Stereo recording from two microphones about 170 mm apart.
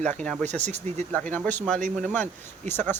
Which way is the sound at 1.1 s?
10° left (ahead or behind).